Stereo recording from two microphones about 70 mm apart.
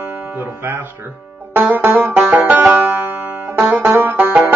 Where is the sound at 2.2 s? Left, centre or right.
Right.